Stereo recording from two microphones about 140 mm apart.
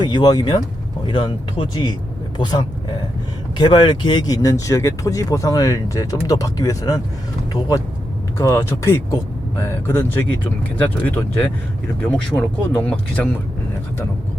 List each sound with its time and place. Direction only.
0.0 s speech: 30° left (ahead or behind)
8.4 s speech: 20° left (ahead or behind)